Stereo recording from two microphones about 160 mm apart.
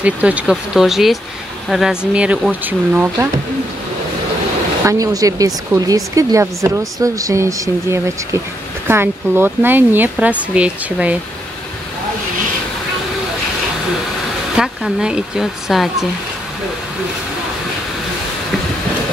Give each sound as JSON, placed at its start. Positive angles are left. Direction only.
{"t": 0.0, "sound": "speech", "side_deg": -10}
{"t": 4.8, "sound": "speech", "side_deg": -20}
{"t": 14.6, "sound": "speech", "side_deg": -5}